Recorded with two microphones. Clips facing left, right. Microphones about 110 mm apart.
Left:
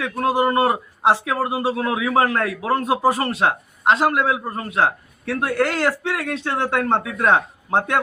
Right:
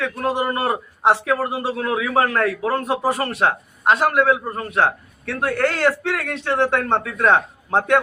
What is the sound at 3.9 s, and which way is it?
Speech, 25° left (ahead or behind).